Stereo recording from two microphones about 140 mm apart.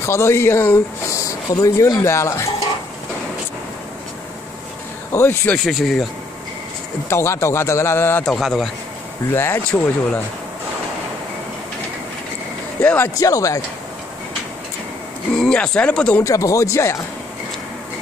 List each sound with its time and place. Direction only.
0.0 s speech: 20° left (ahead or behind)
5.1 s speech: 15° left (ahead or behind)
5.6 s speech: centre (ahead or behind)
7.1 s speech: 20° left (ahead or behind)
8.3 s speech: centre (ahead or behind)
9.3 s speech: 15° left (ahead or behind)
12.8 s speech: 15° left (ahead or behind)
13.2 s speech: 25° left (ahead or behind)
15.3 s speech: 5° left (ahead or behind)
16.2 s speech: 25° left (ahead or behind)